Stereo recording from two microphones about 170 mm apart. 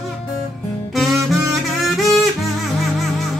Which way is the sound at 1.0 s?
Centre (ahead or behind).